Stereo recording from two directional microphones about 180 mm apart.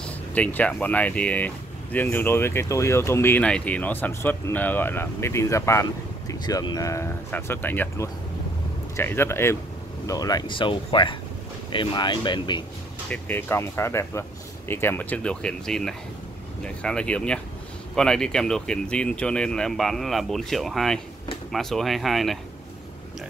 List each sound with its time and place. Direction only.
0.0 s speech: 10° left (ahead or behind); by 12.6 s 25° left (ahead or behind)
13.1 s speech: 10° left (ahead or behind)